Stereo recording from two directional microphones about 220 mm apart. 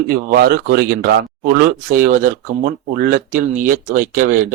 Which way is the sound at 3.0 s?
40° right (ahead or behind).